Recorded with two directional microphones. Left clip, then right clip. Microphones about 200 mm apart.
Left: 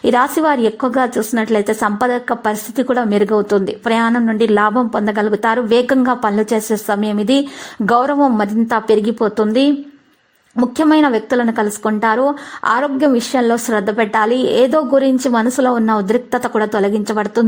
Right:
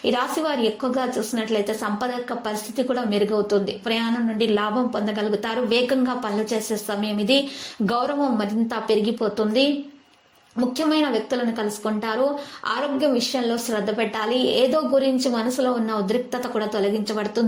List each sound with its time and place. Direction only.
0.0 s a woman's voice: 50° left (ahead or behind)